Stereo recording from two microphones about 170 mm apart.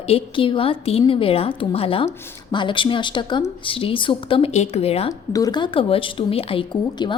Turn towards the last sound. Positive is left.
turn(degrees=25)  # may be behind; listen again after turning